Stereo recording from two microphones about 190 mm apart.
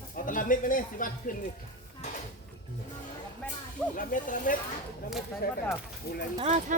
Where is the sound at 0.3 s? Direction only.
45° left (ahead or behind).